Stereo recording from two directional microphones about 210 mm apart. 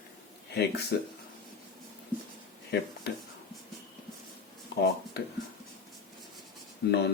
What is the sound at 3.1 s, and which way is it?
Speech, 50° left (ahead or behind).